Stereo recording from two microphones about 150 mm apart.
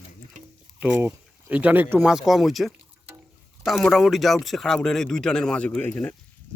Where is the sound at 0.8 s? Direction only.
10° right (ahead or behind).